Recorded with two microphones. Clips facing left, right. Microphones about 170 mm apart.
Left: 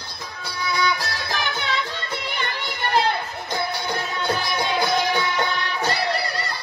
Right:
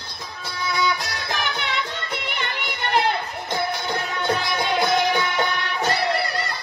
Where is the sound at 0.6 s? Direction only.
20° right (ahead or behind).